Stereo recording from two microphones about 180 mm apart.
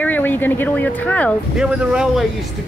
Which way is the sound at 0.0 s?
10° left (ahead or behind).